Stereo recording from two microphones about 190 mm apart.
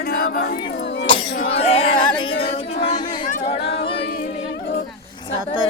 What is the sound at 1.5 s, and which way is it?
Music, 30° left (ahead or behind).